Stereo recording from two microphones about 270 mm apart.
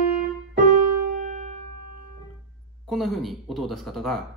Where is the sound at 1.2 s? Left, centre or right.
Right.